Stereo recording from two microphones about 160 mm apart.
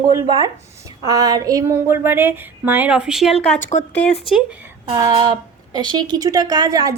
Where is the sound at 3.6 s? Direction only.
50° left (ahead or behind).